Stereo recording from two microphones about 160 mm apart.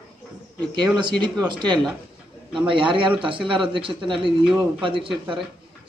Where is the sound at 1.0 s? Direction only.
30° right (ahead or behind).